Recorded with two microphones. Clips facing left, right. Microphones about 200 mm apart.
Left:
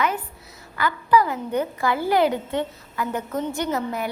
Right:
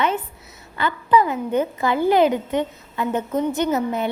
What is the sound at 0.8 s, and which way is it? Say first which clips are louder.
A woman's voice: right 1 dB; 25° right (ahead or behind).